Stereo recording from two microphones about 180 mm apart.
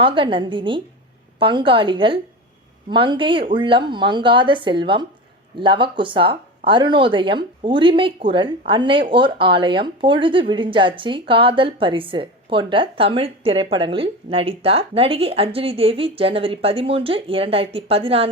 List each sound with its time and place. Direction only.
0.0 s a woman's voice: 30° right (ahead or behind)